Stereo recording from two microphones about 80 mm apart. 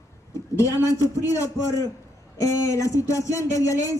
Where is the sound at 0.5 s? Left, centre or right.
Left.